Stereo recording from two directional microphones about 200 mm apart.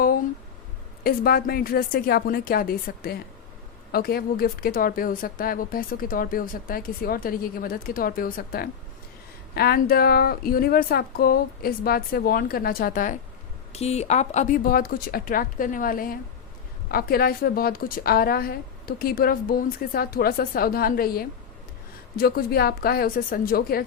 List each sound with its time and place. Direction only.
1.0 s a woman's voice: 50° left (ahead or behind)